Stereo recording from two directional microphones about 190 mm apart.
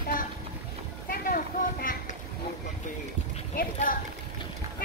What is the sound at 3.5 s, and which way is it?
Speech, 50° left (ahead or behind).